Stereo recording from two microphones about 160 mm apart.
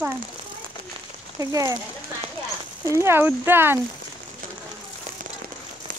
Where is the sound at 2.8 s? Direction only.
15° right (ahead or behind).